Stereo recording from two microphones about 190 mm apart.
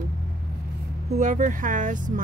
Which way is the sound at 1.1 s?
40° right (ahead or behind).